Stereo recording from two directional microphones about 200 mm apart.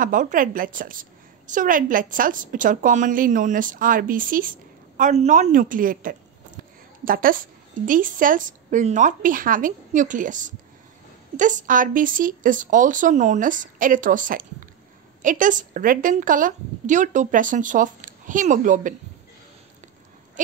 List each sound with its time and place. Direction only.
0.0 s a woman's voice: 40° right (ahead or behind)